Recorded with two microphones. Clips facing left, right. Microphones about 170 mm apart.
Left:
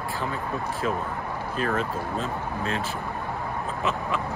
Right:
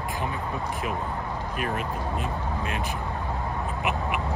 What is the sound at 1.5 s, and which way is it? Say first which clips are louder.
Speech: left 4 dB; 15° right (ahead or behind).